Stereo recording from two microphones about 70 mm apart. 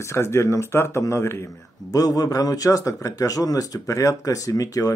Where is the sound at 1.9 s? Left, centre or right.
Left.